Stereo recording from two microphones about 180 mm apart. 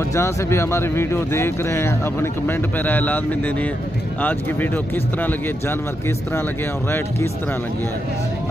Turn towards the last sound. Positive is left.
turn(degrees=15)  # may be behind; listen again after turning